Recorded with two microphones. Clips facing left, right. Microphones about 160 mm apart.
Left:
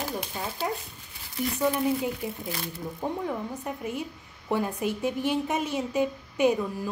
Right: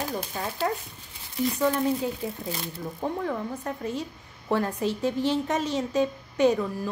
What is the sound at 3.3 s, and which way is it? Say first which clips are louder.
A woman's voice: right 2 dB; 15° left (ahead or behind).